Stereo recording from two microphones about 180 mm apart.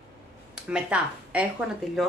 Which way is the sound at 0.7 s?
5° right (ahead or behind).